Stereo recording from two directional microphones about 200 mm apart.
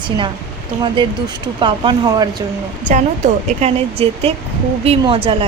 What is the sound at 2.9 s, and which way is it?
Speech, 35° right (ahead or behind).